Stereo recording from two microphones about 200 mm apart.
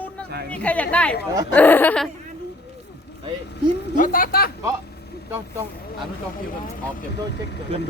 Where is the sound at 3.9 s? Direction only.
45° left (ahead or behind).